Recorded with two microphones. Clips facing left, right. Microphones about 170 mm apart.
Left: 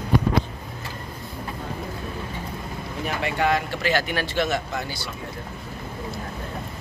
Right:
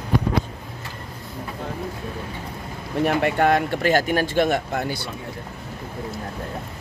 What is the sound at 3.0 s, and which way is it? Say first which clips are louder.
Speech: right 5 dB; 55° right (ahead or behind).